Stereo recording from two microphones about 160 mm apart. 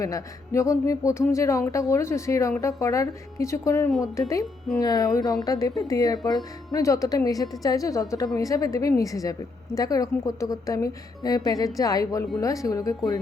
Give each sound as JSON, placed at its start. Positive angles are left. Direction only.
{"t": 0.0, "sound": "a woman's voice", "side_deg": 20}